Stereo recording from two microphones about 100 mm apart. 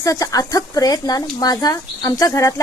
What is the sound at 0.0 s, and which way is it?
A woman's voice, 35° left (ahead or behind).